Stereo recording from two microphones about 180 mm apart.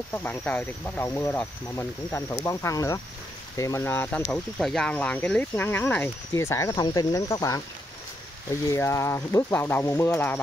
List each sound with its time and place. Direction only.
0.1 s speech: 10° left (ahead or behind)
8.6 s speech: 15° left (ahead or behind)